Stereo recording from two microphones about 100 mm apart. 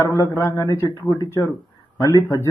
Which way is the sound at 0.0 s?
30° left (ahead or behind).